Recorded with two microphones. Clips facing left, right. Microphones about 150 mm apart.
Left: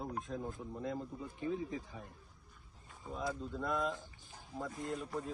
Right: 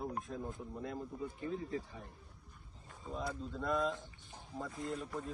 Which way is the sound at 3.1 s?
Centre (ahead or behind).